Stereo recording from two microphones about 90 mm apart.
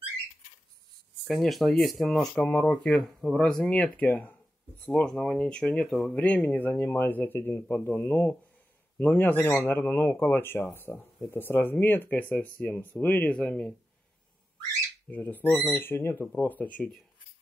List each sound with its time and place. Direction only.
1.2 s speech: centre (ahead or behind)
2.1 s speech: 15° left (ahead or behind)
6.1 s speech: 15° left (ahead or behind)
15.0 s speech: 20° left (ahead or behind)